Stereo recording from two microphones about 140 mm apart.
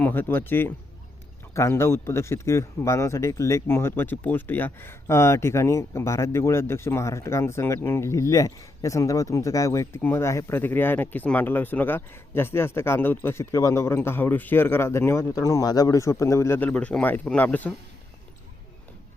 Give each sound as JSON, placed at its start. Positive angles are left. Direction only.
{"t": 0.0, "sound": "speech", "side_deg": 15}